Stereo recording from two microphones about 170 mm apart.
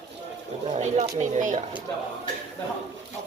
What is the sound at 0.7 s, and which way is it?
Speech, 40° right (ahead or behind).